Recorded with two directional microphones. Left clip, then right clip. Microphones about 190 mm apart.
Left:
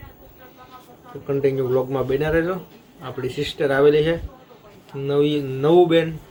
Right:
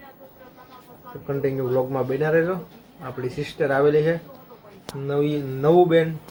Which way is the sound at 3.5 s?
15° left (ahead or behind).